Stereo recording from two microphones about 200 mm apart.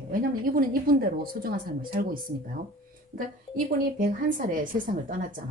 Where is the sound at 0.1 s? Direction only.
45° right (ahead or behind).